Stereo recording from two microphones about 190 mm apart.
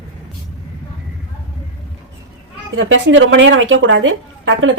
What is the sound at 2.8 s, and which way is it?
A woman's voice, 80° right.